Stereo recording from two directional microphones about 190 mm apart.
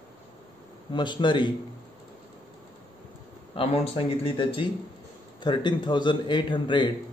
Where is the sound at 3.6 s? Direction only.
30° left (ahead or behind).